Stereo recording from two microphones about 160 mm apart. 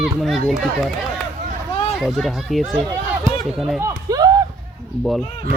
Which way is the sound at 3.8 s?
25° right (ahead or behind).